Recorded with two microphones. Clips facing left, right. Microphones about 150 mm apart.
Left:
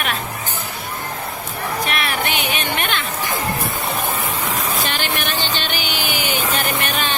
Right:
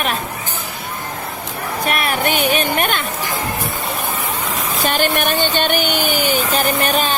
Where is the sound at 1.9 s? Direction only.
45° right (ahead or behind).